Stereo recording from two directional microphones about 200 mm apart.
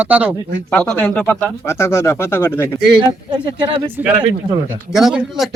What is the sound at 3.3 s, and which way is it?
Speech, 20° right (ahead or behind).